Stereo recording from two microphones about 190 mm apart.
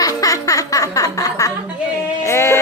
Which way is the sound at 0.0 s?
20° left (ahead or behind).